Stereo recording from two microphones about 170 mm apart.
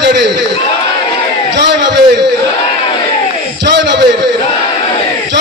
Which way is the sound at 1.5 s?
90° right.